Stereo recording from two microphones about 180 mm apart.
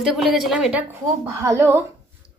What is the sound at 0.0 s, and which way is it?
Speech, centre (ahead or behind).